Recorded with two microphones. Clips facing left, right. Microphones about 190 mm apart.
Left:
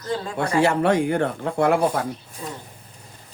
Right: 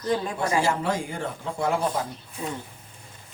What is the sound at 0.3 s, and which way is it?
Speech, 65° left (ahead or behind).